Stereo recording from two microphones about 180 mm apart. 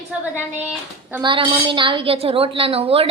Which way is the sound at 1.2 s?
25° right (ahead or behind).